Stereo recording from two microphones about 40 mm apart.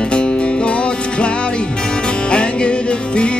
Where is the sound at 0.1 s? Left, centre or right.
Left.